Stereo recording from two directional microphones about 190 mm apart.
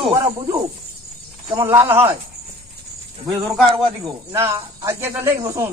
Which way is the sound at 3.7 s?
25° right (ahead or behind).